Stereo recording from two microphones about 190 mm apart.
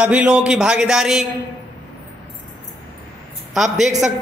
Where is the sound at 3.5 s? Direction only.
Centre (ahead or behind).